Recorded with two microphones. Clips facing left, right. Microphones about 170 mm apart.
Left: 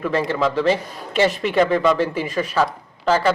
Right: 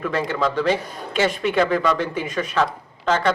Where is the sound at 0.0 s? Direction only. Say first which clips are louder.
Left 2 dB; centre (ahead or behind).